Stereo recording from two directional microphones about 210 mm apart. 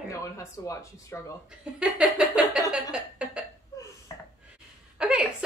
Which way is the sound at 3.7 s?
15° left (ahead or behind).